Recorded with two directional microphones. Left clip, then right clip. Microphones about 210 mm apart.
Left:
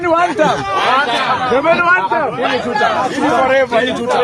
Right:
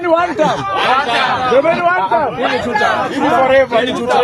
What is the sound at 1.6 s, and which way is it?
Speech, 20° left (ahead or behind).